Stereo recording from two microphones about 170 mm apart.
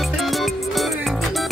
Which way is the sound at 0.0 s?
Centre (ahead or behind).